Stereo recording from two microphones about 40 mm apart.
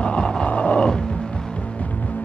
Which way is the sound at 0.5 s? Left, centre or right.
Left.